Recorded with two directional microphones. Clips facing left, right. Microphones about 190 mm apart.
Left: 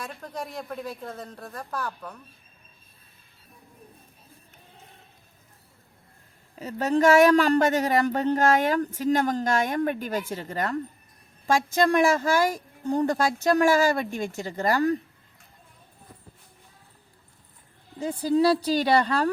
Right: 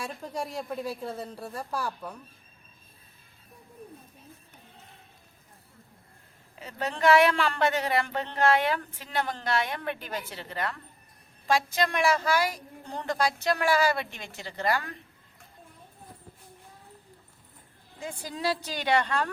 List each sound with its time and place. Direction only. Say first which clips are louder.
0.0 s a woman's voice: right 1 dB; 10° right (ahead or behind)
6.6 s a woman's voice: left 7 dB; 40° left (ahead or behind)
18.0 s a woman's voice: left 11 dB; 30° left (ahead or behind)